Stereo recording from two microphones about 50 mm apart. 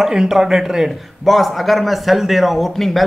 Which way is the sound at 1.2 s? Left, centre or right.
Centre.